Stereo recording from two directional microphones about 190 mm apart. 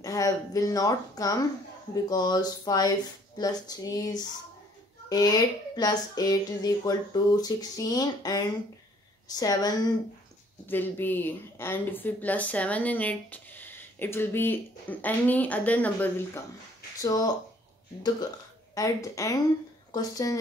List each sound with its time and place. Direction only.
0.0 s a woman's voice: 20° left (ahead or behind)
18.8 s a woman's voice: 15° left (ahead or behind)